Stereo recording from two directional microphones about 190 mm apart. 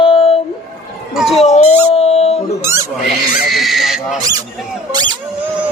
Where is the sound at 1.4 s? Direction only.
35° left (ahead or behind).